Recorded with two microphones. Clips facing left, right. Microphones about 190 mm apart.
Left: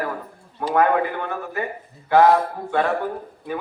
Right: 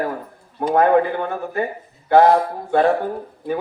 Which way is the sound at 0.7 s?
35° right (ahead or behind).